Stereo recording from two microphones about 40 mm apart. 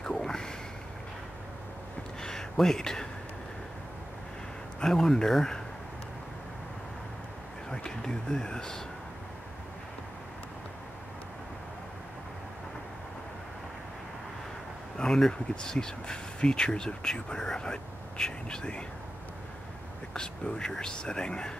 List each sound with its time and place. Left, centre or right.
0.0 s a sound: centre
2.2 s a sound: centre
4.8 s speech: centre
7.7 s speech: centre
15.0 s speech: centre
20.2 s speech: left